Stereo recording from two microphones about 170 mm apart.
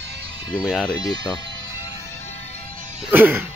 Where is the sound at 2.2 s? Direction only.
40° left (ahead or behind).